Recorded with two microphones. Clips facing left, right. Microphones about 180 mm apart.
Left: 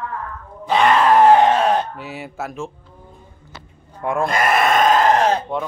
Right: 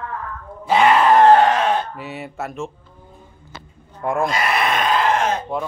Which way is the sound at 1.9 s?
Centre (ahead or behind).